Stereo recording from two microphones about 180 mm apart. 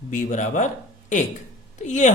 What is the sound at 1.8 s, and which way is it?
Speech, 40° left (ahead or behind).